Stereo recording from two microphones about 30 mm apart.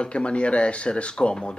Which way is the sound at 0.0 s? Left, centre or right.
Left.